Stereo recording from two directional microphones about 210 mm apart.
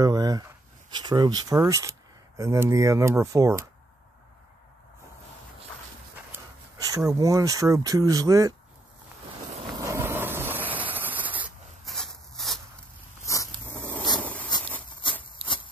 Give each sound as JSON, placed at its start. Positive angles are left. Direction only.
{"t": 0.0, "sound": "speech", "side_deg": -20}
{"t": 6.3, "sound": "speech", "side_deg": -15}
{"t": 9.6, "sound": "vehicle", "side_deg": -20}
{"t": 13.3, "sound": "a sound", "side_deg": 10}